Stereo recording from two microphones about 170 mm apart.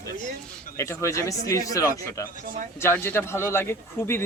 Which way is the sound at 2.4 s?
50° right (ahead or behind).